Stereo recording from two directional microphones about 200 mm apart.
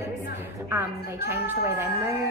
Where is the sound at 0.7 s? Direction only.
10° right (ahead or behind).